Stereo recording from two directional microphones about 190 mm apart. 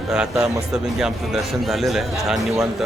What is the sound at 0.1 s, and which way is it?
A man's voice, 5° right (ahead or behind).